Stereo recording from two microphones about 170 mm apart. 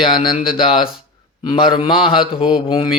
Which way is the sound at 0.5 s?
30° left (ahead or behind).